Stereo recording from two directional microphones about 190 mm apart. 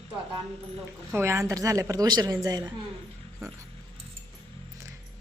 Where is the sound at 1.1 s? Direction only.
15° right (ahead or behind).